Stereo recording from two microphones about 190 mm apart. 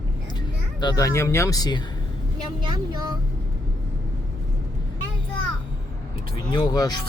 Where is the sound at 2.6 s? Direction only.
25° right (ahead or behind).